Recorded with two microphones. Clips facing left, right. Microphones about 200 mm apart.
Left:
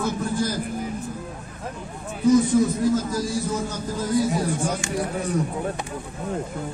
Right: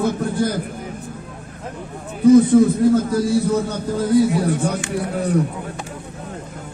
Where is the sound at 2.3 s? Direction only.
55° right (ahead or behind).